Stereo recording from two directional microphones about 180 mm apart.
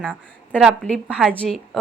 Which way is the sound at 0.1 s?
Centre (ahead or behind).